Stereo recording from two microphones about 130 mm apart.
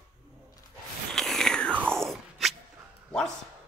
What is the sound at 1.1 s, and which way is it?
Biting, centre (ahead or behind).